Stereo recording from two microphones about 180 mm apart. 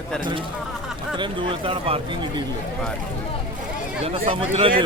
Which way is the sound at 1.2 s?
30° right (ahead or behind).